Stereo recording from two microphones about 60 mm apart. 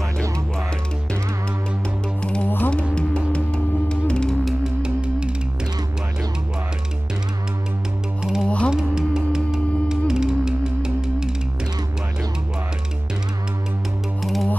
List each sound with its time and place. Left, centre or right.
2.4 s music: left
2.9 s music: centre
4.8 s music: centre
8.2 s music: centre
14.2 s music: centre